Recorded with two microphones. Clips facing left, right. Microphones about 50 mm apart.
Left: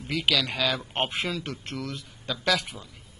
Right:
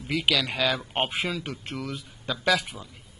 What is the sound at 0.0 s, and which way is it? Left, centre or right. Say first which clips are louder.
Speech: right 1 dB; centre.